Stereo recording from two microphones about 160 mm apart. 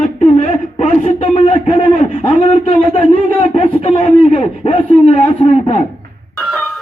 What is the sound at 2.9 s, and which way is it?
A man's voice, 35° left (ahead or behind).